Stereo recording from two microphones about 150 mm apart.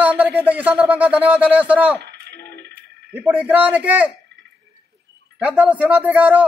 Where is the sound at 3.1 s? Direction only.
10° right (ahead or behind).